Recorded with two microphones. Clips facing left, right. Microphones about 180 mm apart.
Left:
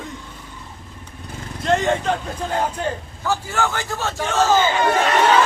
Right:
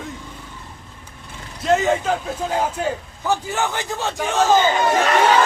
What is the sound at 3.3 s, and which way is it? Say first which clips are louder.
A man's voice: right 1 dB; 20° right (ahead or behind).